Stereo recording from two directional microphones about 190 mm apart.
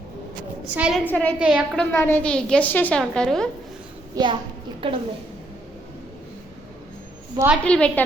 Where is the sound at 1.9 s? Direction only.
10° left (ahead or behind).